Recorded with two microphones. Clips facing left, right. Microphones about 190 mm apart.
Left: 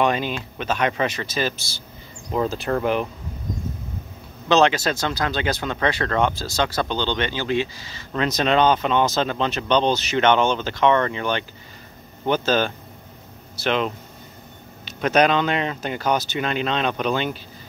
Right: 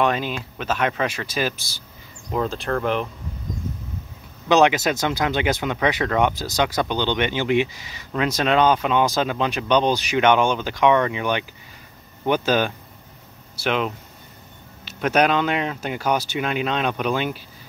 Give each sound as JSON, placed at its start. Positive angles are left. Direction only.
{"t": 0.0, "sound": "speech", "side_deg": 0}
{"t": 2.3, "sound": "speech", "side_deg": 5}
{"t": 4.5, "sound": "speech", "side_deg": -15}
{"t": 8.1, "sound": "speech", "side_deg": -5}